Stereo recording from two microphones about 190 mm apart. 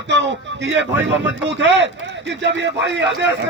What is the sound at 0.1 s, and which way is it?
Speech, 70° right (ahead or behind).